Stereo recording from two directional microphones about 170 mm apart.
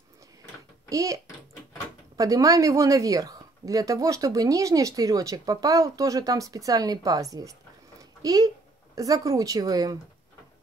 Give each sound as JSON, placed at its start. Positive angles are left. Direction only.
{"t": 0.8, "sound": "a child's voice", "side_deg": -20}